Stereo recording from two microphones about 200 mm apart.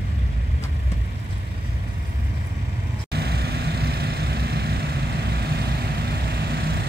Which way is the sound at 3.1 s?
55° right (ahead or behind).